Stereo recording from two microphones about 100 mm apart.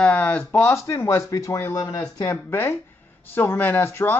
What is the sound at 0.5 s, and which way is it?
A man's voice, 20° left (ahead or behind).